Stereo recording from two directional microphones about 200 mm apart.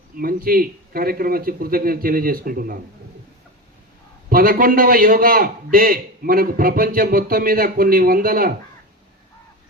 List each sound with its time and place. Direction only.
0.2 s a man's voice: 45° right (ahead or behind)
4.3 s a man's voice: 45° right (ahead or behind)